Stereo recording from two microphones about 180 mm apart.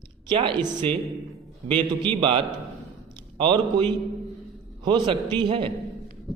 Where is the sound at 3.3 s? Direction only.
30° right (ahead or behind).